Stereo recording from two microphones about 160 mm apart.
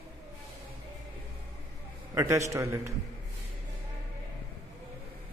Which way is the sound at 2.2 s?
20° right (ahead or behind).